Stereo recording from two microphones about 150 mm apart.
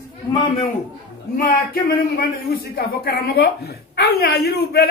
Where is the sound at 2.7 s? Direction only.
85° left.